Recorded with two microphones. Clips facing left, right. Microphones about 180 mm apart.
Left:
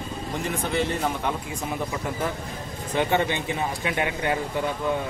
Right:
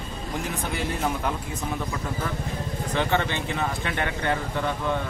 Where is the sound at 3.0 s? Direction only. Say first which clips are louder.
Left 2 dB; 15° left (ahead or behind).